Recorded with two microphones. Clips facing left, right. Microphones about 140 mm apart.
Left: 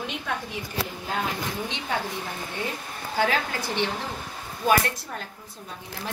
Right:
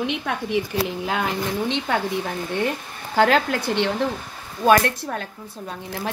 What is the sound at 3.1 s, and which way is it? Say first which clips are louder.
Speech: right 7 dB; 75° right (ahead or behind).